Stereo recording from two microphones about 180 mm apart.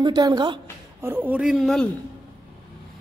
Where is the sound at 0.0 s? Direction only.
25° right (ahead or behind).